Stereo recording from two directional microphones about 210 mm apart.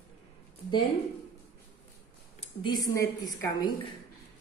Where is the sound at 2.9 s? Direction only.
15° left (ahead or behind).